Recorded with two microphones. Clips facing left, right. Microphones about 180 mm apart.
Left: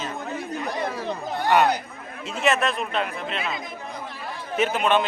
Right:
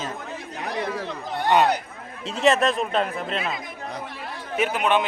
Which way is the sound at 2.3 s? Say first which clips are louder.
Right 3 dB; 35° right (ahead or behind).